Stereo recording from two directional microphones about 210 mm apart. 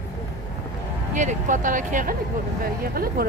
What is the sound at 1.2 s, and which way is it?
Speech, 35° right (ahead or behind).